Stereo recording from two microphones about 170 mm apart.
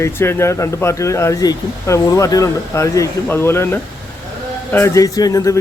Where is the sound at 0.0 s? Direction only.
15° left (ahead or behind).